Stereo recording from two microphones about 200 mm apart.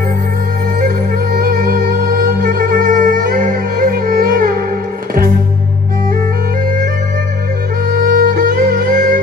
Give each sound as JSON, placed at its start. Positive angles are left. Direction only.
{"t": 0.7, "sound": "music", "side_deg": -45}
{"t": 7.9, "sound": "music", "side_deg": -45}